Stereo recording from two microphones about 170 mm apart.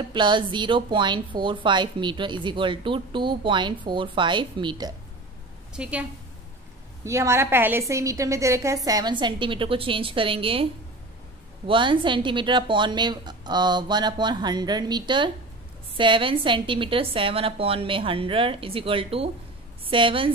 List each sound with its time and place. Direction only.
0.1 s a woman's voice: 25° right (ahead or behind)
5.7 s a woman's voice: 5° right (ahead or behind)
7.1 s a woman's voice: 15° right (ahead or behind)